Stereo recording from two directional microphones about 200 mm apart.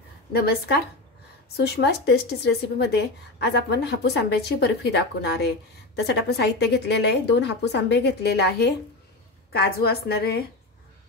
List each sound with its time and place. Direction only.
0.3 s a woman's voice: 50° left (ahead or behind)